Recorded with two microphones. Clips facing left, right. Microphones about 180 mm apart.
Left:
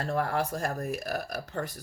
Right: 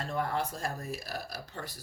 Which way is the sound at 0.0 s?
70° left (ahead or behind).